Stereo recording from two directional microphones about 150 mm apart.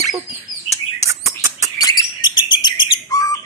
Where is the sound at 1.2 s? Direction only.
20° right (ahead or behind).